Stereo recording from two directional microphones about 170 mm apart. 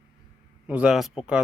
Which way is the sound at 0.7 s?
5° right (ahead or behind).